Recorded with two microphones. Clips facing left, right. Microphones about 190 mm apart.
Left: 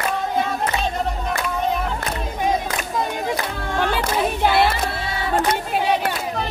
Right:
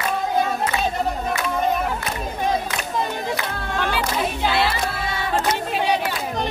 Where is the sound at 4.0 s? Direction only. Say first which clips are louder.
Left 3 dB; 55° left (ahead or behind).